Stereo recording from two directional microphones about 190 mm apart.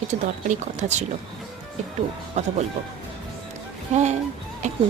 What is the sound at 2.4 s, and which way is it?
Speech, 35° right (ahead or behind).